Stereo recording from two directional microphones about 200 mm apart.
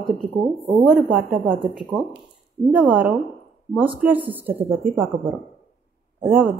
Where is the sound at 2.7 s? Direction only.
5° right (ahead or behind).